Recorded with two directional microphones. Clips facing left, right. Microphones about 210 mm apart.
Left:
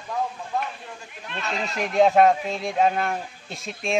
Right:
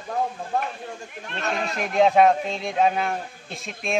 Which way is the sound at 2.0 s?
Centre (ahead or behind).